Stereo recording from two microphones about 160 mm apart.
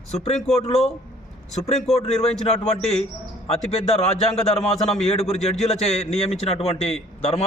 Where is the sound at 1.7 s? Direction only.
40° left (ahead or behind).